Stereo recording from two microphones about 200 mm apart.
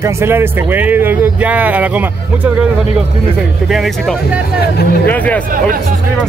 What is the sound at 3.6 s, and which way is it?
Speech, centre (ahead or behind).